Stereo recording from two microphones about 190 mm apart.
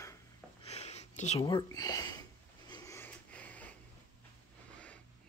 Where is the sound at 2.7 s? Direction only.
15° left (ahead or behind).